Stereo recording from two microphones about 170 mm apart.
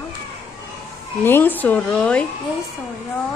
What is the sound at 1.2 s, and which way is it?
Speech, 10° left (ahead or behind).